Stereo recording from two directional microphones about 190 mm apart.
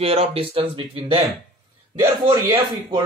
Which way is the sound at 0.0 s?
30° right (ahead or behind).